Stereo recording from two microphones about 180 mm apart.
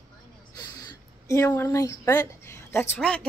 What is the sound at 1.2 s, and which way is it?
A woman's voice, 15° left (ahead or behind).